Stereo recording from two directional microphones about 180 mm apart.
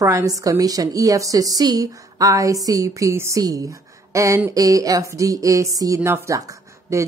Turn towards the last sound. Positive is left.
turn(degrees=-15)  # may be behind; listen again after turning